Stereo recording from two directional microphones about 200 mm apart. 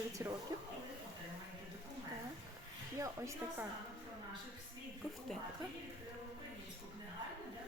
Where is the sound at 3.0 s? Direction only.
15° right (ahead or behind).